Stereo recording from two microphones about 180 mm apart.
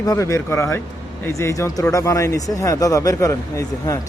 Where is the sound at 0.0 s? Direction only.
20° left (ahead or behind).